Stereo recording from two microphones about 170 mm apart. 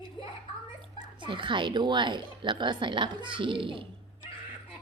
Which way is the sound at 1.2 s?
30° right (ahead or behind).